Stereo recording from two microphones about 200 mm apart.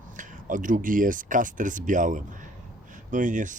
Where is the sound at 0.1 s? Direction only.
40° right (ahead or behind).